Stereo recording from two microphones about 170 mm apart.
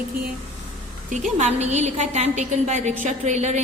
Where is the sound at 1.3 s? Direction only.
40° right (ahead or behind).